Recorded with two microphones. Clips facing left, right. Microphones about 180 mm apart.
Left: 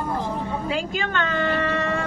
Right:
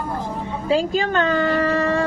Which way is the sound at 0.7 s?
35° right (ahead or behind).